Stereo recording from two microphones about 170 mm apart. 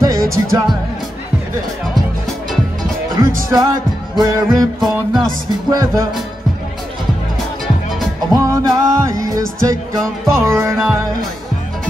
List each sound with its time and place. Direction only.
0.0 s music: 20° right (ahead or behind)
3.2 s music: 20° right (ahead or behind)
4.1 s speech: 20° right (ahead or behind)
4.7 s music: centre (ahead or behind)
5.7 s speech: 20° right (ahead or behind)
8.3 s speech: 20° right (ahead or behind)
10.2 s music: 15° right (ahead or behind)